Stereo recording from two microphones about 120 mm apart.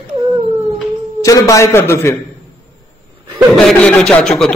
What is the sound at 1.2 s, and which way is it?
Speech, 30° left (ahead or behind).